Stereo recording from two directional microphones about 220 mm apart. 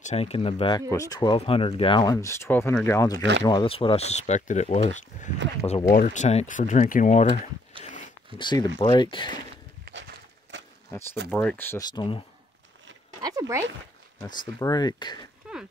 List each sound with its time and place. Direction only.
0.0 s speech: 30° left (ahead or behind); by 3.2 s 10° left (ahead or behind)
3.2 s speech: 55° right (ahead or behind)
3.4 s speech: 20° left (ahead or behind)
7.8 s dog: 35° left (ahead or behind)
8.4 s speech: 20° left (ahead or behind)
10.5 s a sound: 55° right (ahead or behind)
11.2 s speech: 5° left (ahead or behind)
11.9 s speech: 20° left (ahead or behind)
14.3 s speech: 20° left (ahead or behind)
15.5 s dog: 5° right (ahead or behind)